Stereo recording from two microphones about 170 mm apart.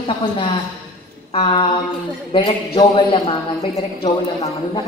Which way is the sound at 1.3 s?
35° left (ahead or behind).